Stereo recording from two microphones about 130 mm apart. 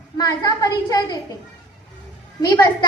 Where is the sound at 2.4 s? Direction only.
30° left (ahead or behind).